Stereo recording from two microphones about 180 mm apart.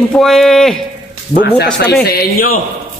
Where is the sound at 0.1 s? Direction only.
Centre (ahead or behind).